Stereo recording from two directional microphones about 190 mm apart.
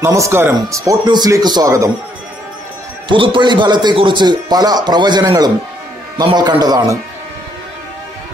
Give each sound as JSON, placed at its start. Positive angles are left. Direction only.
{"t": 0.0, "sound": "a man's voice", "side_deg": -15}
{"t": 3.1, "sound": "a man's voice", "side_deg": -25}